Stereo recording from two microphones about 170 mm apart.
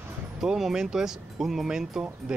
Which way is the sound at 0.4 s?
Centre (ahead or behind).